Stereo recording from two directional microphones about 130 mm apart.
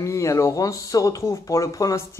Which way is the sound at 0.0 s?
25° left (ahead or behind).